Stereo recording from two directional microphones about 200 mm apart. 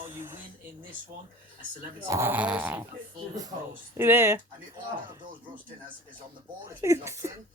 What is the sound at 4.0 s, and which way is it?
Speech, 10° right (ahead or behind).